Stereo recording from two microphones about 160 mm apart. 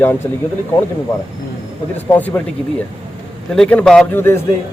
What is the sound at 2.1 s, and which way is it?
Speech, 10° left (ahead or behind).